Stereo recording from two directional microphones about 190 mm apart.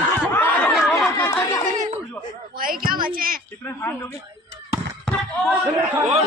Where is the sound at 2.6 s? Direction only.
50° right (ahead or behind).